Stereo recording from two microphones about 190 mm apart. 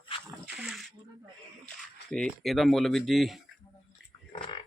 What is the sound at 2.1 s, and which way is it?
Speech, 5° left (ahead or behind).